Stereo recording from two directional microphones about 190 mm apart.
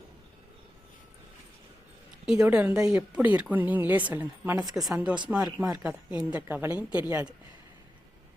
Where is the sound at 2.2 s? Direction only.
5° right (ahead or behind).